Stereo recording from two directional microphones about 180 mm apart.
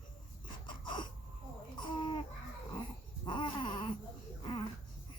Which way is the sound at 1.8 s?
25° left (ahead or behind).